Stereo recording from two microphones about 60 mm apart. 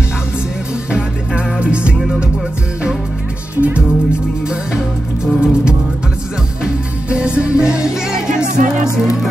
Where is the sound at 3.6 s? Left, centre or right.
Centre.